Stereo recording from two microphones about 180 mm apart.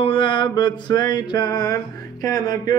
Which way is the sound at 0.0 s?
30° left (ahead or behind).